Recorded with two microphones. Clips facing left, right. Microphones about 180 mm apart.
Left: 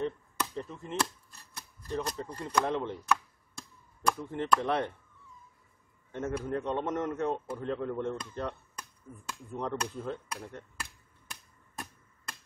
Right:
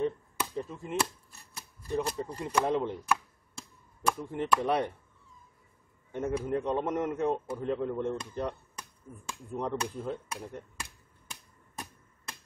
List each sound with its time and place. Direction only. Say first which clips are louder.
0.0 s chop: right 2 dB; 5° right (ahead or behind)
1.5 s speech: right 3 dB; 5° right (ahead or behind)
6.1 s a man's voice: right 2 dB; 10° right (ahead or behind)
9.3 s a sound: right 2 dB; 10° right (ahead or behind)